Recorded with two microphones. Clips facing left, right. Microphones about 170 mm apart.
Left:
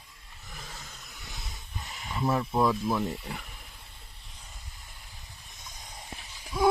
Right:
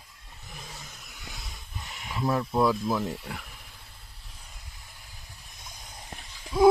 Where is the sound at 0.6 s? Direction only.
10° right (ahead or behind).